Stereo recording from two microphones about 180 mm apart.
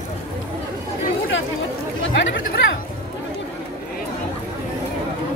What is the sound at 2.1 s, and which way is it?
Speech, 75° left (ahead or behind).